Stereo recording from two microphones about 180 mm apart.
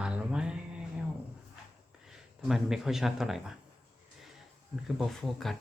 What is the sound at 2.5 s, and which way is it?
Speech, centre (ahead or behind).